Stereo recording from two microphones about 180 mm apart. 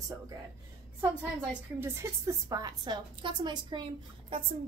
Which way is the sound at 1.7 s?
15° right (ahead or behind).